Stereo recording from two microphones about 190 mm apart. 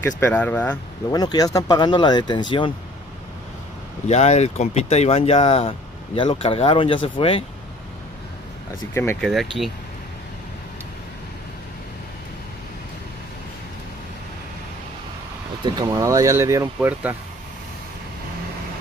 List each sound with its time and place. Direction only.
0.0 s speech: 10° left (ahead or behind)
1.1 s speech: 20° left (ahead or behind)
4.1 s speech: 35° left (ahead or behind)
8.9 s speech: 10° left (ahead or behind)
15.6 s speech: 20° right (ahead or behind)